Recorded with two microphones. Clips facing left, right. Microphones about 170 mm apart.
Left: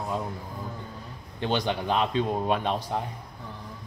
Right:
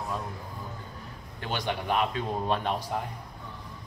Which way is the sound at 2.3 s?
20° left (ahead or behind).